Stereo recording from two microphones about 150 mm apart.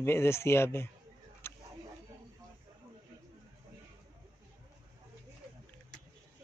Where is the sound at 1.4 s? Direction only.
15° left (ahead or behind).